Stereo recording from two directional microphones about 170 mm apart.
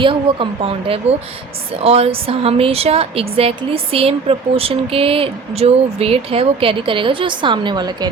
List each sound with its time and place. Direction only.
0.0 s a woman's voice: 30° right (ahead or behind)